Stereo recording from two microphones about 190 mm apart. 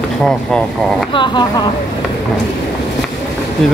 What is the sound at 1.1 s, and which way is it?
Speech, 25° left (ahead or behind).